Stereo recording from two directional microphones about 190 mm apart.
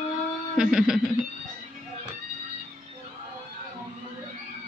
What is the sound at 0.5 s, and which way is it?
Speech, centre (ahead or behind).